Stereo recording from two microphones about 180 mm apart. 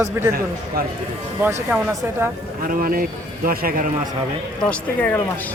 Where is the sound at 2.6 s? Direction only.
50° right (ahead or behind).